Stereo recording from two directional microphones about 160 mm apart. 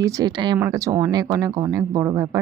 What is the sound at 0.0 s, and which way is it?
Speech, 25° right (ahead or behind).